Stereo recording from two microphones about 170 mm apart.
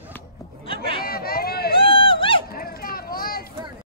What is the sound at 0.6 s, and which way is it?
Chatter, 35° left (ahead or behind).